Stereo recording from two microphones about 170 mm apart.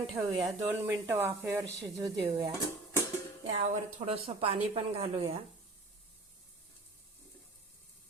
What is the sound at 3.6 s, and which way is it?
A woman's voice, 40° right (ahead or behind).